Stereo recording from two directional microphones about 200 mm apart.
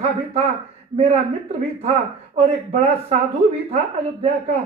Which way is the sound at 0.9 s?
30° right (ahead or behind).